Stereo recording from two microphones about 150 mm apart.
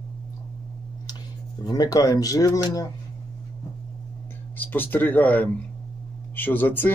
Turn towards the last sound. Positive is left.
turn(degrees=10)  # may be behind; listen again after turning